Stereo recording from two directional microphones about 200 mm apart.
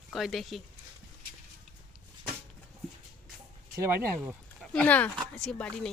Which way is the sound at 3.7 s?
10° right (ahead or behind).